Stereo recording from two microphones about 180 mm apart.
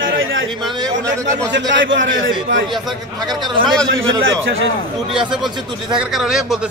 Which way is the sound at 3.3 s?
25° right (ahead or behind).